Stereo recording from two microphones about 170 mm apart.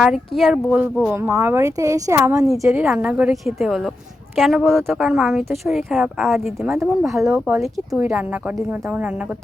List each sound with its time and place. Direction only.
0.0 s speech: centre (ahead or behind); by 2.5 s 15° right (ahead or behind)
2.6 s speech: 5° right (ahead or behind)
6.7 s speech: 15° right (ahead or behind)
7.0 s speech: centre (ahead or behind)